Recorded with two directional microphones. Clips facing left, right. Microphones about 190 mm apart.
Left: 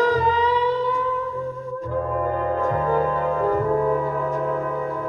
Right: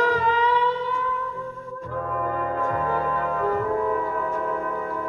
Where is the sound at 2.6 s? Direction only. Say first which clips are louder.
Left 5 dB; 40° left (ahead or behind).